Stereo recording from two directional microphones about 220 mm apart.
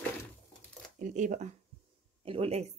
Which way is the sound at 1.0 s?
35° right (ahead or behind).